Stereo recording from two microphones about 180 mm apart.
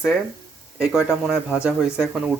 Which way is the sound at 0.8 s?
5° right (ahead or behind).